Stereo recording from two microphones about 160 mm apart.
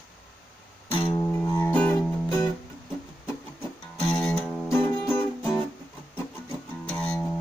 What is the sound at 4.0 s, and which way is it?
Music, 5° left (ahead or behind).